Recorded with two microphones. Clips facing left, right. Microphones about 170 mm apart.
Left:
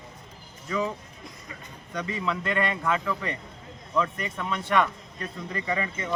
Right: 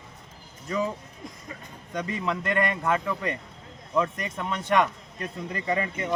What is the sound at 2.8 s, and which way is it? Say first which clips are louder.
Speech: right 1 dB; 35° right (ahead or behind).